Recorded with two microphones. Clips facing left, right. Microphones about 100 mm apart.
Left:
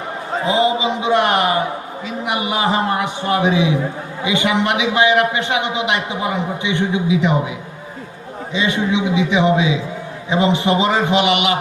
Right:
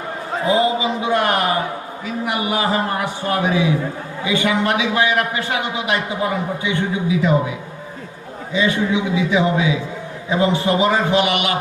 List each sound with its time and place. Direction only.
0.4 s a sound: 25° left (ahead or behind)
2.0 s a man's voice: 20° left (ahead or behind)
8.5 s a man's voice: 20° left (ahead or behind)